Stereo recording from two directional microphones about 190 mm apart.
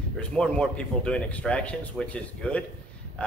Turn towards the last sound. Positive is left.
turn(degrees=5)  # may be behind; listen again after turning